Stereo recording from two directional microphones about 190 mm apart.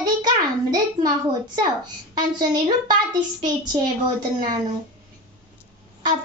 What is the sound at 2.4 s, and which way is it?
A child's voice, 20° right (ahead or behind).